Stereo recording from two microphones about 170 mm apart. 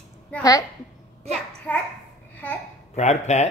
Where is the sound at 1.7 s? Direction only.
10° left (ahead or behind).